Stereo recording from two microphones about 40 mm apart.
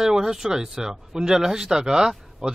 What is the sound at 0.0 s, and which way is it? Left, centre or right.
A man's voice, centre.